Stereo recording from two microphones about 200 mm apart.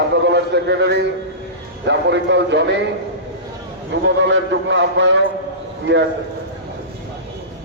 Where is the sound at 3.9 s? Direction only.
60° right (ahead or behind).